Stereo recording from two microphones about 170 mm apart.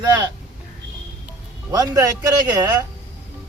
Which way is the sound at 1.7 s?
20° right (ahead or behind).